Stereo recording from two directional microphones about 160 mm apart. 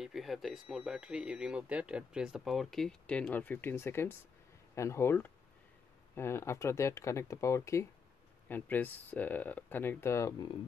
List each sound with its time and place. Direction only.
0.0 s speech: centre (ahead or behind); by 10.5 s 20° left (ahead or behind)